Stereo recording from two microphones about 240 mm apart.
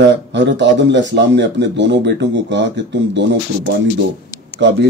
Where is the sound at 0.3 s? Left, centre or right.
Right.